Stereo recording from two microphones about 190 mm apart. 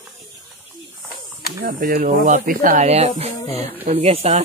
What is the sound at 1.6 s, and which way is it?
Speech, 50° right (ahead or behind).